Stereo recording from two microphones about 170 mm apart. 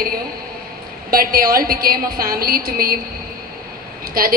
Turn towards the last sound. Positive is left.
turn(degrees=-60)  # may be behind; listen again after turning